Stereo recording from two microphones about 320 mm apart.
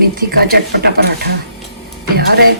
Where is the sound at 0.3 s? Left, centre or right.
Right.